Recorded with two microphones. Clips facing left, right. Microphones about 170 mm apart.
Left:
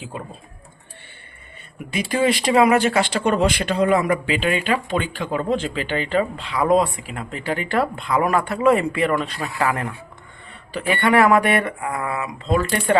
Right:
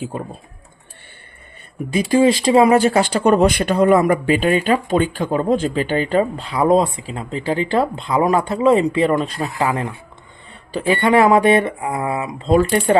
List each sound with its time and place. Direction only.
1.9 s speech: 30° right (ahead or behind)
9.6 s speech: 20° right (ahead or behind)
10.8 s speech: 35° right (ahead or behind)
11.0 s speech: 25° right (ahead or behind)